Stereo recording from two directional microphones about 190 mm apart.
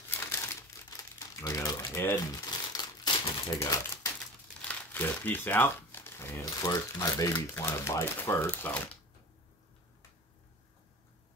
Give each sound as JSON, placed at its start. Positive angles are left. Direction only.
{"t": 0.1, "sound": "crumpling", "side_deg": 15}
{"t": 1.4, "sound": "a sound", "side_deg": 20}
{"t": 2.7, "sound": "crumpling", "side_deg": 20}
{"t": 4.6, "sound": "speech", "side_deg": 10}